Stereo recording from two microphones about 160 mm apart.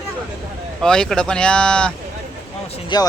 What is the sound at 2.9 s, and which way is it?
Speech, 25° left (ahead or behind).